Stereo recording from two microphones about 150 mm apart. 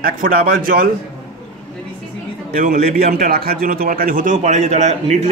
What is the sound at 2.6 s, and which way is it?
A man's voice, 70° right (ahead or behind).